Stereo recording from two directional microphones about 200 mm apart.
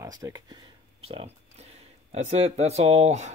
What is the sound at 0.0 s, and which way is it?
Speech, 20° right (ahead or behind).